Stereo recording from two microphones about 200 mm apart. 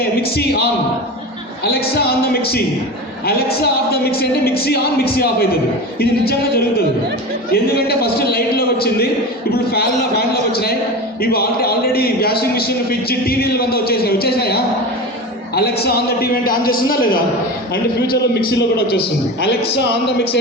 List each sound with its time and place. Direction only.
0.2 s a man's voice: 50° left (ahead or behind)
7.5 s a man's voice: 50° left (ahead or behind)